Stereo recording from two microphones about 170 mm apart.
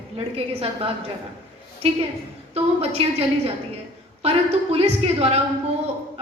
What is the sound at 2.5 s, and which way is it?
Speech, 35° right (ahead or behind).